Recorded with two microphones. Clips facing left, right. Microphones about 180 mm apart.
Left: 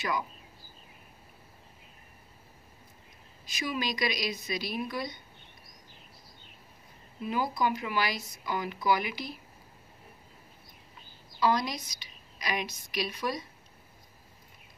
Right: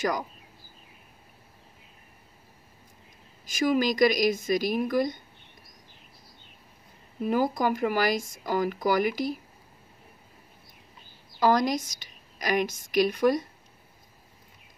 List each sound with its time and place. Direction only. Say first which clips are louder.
3.4 s speech: right 9 dB; 45° right (ahead or behind)
7.2 s speech: right 5 dB; 45° right (ahead or behind)
11.3 s a woman's voice: right 5 dB; 45° right (ahead or behind)